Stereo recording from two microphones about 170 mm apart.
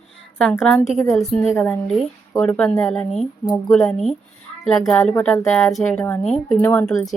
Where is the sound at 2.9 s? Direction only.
5° left (ahead or behind).